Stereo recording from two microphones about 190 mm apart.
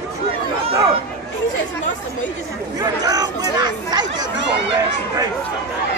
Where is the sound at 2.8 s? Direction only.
20° right (ahead or behind).